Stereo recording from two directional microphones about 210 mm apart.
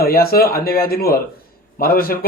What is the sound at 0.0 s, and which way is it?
Speech, 45° left (ahead or behind).